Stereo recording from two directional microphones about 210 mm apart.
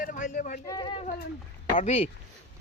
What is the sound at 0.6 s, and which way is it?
Speech, 20° left (ahead or behind).